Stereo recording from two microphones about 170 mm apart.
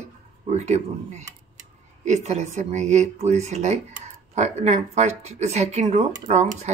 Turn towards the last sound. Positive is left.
turn(degrees=-40)  # may be behind; listen again after turning